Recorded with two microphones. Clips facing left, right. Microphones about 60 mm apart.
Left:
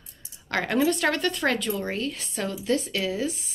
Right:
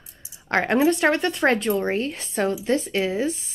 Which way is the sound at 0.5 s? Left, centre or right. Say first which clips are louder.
Right 4 dB; right.